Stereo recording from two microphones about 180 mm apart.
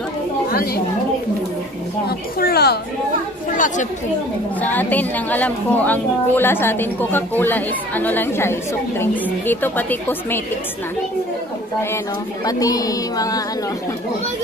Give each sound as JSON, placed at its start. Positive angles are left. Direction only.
{"t": 2.0, "sound": "speech", "side_deg": 60}
{"t": 3.5, "sound": "speech", "side_deg": 45}
{"t": 4.6, "sound": "a woman's voice", "side_deg": 10}
{"t": 12.4, "sound": "speech", "side_deg": 20}